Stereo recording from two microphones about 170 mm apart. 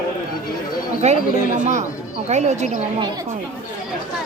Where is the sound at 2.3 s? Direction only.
45° right (ahead or behind).